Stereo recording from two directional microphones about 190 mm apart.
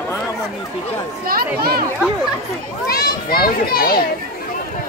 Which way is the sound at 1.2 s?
55° right (ahead or behind).